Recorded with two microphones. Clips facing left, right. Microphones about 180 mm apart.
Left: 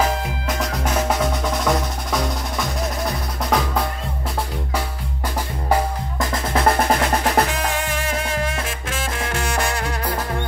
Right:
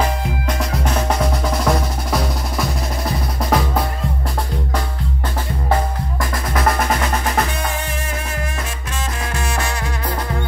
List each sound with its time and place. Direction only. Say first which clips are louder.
0.5 s percussion: even; centre (ahead or behind)
6.5 s percussion: left 1 dB; 30° left (ahead or behind)
7.8 s music: left 2 dB; 90° left